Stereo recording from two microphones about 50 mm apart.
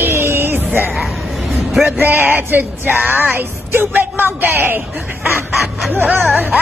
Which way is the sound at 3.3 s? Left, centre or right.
Right.